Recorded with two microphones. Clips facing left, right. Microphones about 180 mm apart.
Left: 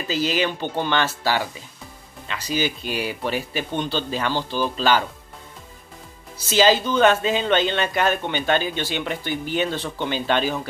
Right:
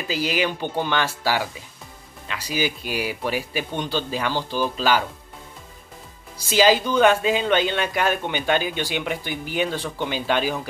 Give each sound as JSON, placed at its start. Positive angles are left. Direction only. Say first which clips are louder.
{"t": 0.1, "sound": "speech", "louder": "left 1 dB", "side_deg": -10}
{"t": 6.3, "sound": "speech", "louder": "even", "side_deg": -10}